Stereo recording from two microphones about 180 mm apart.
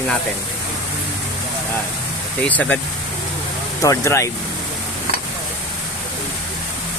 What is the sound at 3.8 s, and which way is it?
Speech, 15° left (ahead or behind).